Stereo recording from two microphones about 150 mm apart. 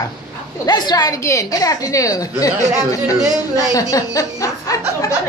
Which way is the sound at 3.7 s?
25° left (ahead or behind).